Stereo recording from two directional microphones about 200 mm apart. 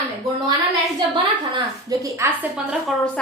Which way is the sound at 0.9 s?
20° right (ahead or behind).